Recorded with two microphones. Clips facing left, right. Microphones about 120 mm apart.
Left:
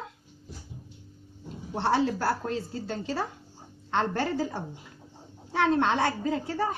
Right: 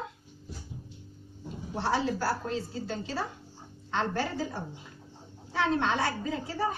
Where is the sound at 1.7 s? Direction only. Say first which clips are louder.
Left 3 dB; 65° left (ahead or behind).